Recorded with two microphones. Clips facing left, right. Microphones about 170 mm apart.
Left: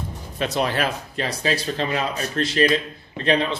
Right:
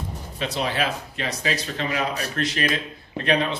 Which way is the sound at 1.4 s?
35° left (ahead or behind).